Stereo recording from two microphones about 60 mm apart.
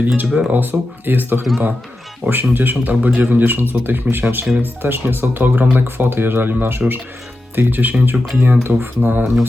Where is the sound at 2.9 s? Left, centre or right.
Centre.